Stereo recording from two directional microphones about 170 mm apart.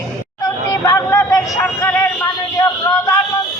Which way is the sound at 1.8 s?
15° left (ahead or behind).